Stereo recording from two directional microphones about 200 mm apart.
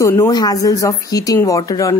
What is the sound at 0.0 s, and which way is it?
Speech, 15° left (ahead or behind).